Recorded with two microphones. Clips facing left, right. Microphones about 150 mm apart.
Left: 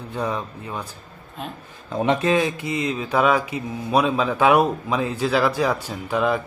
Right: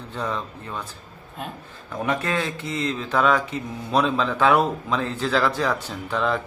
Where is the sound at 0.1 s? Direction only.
10° left (ahead or behind).